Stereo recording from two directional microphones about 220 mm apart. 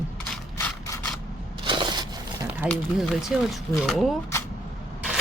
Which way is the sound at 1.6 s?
20° right (ahead or behind).